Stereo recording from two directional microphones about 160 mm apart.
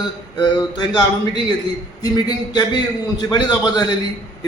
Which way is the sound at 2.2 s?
25° left (ahead or behind).